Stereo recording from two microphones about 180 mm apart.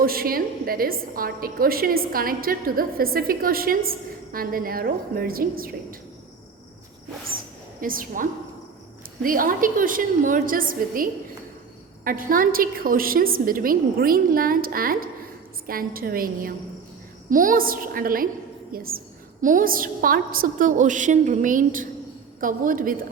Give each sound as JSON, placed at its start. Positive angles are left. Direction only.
{"t": 0.0, "sound": "a woman's voice", "side_deg": -55}
{"t": 7.8, "sound": "a woman's voice", "side_deg": -50}